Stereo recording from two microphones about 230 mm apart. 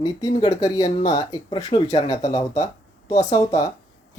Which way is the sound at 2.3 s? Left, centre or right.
Centre.